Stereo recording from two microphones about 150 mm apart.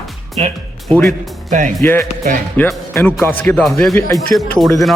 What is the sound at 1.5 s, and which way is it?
Speech, 60° right (ahead or behind).